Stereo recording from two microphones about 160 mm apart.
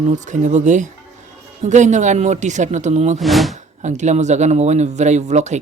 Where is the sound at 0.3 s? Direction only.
50° right (ahead or behind).